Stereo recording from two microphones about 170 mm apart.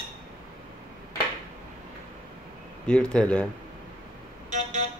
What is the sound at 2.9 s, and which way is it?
Speech, 5° left (ahead or behind).